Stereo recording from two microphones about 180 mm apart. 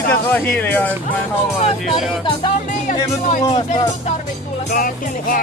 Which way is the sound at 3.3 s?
30° left (ahead or behind).